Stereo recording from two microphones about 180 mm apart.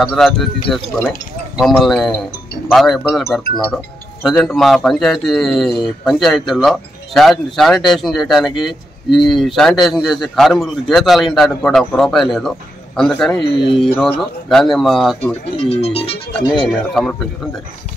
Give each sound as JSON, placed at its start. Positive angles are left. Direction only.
{"t": 0.0, "sound": "speech", "side_deg": 0}
{"t": 15.4, "sound": "speech", "side_deg": 35}
{"t": 16.6, "sound": "speech", "side_deg": 5}